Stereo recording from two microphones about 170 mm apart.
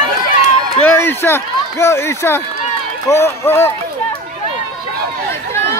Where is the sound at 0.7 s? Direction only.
15° left (ahead or behind).